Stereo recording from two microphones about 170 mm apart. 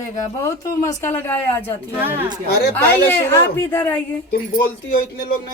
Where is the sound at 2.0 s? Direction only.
10° right (ahead or behind).